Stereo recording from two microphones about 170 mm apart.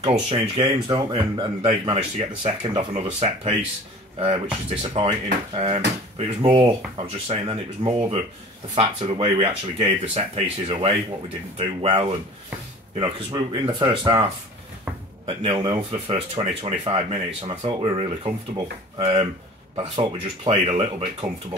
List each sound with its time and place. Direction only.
0.0 s speech: 30° right (ahead or behind)
4.6 s speech: 35° right (ahead or behind)
13.5 s speech: 30° right (ahead or behind)
15.2 s speech: 35° right (ahead or behind)